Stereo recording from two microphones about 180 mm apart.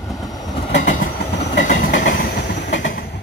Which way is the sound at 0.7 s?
45° left (ahead or behind).